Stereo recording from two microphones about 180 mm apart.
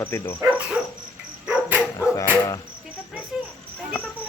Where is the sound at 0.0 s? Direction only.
15° left (ahead or behind).